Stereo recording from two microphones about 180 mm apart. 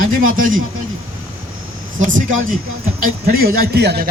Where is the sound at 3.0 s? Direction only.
55° right (ahead or behind).